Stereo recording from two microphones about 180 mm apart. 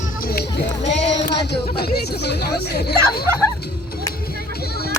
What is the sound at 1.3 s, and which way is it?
Speech, 65° left (ahead or behind).